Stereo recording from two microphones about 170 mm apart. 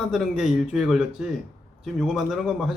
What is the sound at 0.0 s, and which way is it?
Speech, centre (ahead or behind).